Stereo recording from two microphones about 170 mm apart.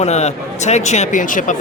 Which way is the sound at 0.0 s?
40° left (ahead or behind).